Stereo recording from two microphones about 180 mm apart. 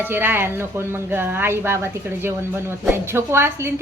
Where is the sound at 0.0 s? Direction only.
10° right (ahead or behind).